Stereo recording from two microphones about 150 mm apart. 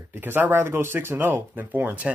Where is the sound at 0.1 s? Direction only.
15° right (ahead or behind).